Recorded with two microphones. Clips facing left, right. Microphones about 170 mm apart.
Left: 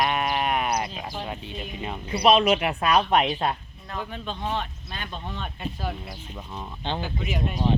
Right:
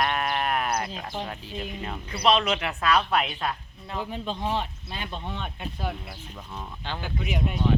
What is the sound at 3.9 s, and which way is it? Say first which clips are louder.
Speech: right 1 dB; 15° right (ahead or behind).